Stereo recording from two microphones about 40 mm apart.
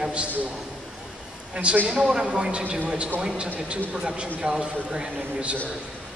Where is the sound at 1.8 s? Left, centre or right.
Right.